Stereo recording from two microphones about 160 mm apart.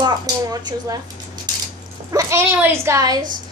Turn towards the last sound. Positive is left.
turn(degrees=-20)  # may be behind; listen again after turning